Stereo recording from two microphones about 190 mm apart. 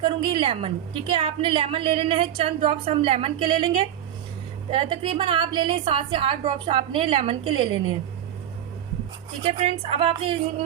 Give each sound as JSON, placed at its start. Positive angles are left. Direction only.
{"t": 0.0, "sound": "a woman's voice", "side_deg": -25}
{"t": 9.4, "sound": "a woman's voice", "side_deg": -35}